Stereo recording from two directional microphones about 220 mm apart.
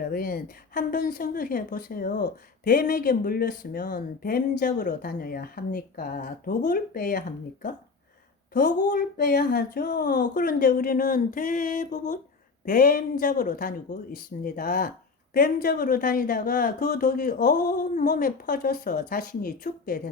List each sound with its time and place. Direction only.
0.0 s speech: 40° left (ahead or behind)